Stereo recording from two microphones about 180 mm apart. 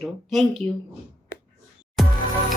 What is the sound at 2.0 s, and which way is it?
Music, centre (ahead or behind).